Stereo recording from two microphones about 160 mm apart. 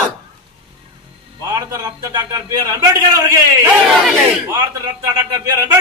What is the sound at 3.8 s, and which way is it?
Speech, centre (ahead or behind).